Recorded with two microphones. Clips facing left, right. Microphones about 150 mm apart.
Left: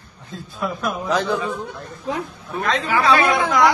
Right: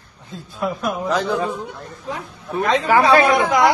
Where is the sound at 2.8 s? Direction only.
45° right (ahead or behind).